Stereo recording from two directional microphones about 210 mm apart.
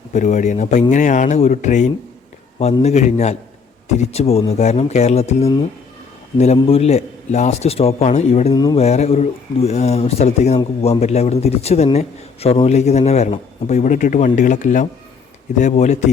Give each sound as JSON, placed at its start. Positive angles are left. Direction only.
{"t": 0.1, "sound": "a man's voice", "side_deg": 35}
{"t": 8.5, "sound": "speech", "side_deg": 20}
{"t": 8.8, "sound": "a man's voice", "side_deg": 30}